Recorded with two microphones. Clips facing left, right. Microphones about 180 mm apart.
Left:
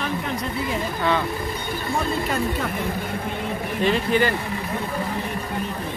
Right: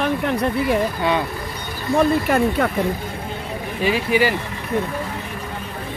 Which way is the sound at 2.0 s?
60° right (ahead or behind).